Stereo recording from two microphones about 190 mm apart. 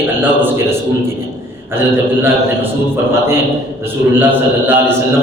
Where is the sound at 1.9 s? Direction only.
10° right (ahead or behind).